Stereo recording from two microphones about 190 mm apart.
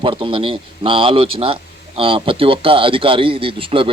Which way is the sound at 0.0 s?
25° right (ahead or behind).